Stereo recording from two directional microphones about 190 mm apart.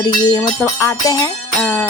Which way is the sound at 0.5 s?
15° left (ahead or behind).